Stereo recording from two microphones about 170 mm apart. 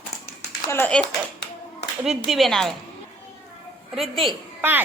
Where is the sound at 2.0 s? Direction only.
Centre (ahead or behind).